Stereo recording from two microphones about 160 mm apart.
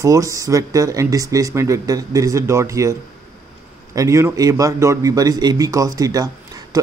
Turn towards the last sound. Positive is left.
turn(degrees=-20)  # may be behind; listen again after turning